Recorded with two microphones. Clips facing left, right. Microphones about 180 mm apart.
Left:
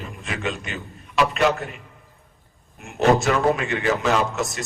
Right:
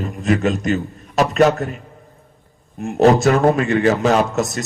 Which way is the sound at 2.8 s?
35° right (ahead or behind).